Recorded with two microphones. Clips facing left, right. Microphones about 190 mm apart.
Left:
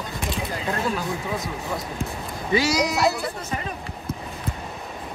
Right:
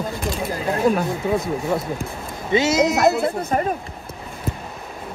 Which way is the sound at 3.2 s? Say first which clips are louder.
Right 8 dB; 50° right (ahead or behind).